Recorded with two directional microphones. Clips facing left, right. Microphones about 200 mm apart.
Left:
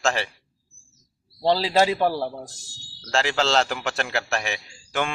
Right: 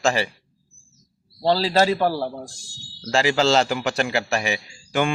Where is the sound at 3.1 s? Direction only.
Centre (ahead or behind).